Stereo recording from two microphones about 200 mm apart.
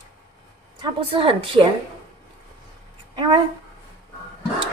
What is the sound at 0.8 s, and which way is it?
Speech, 25° right (ahead or behind).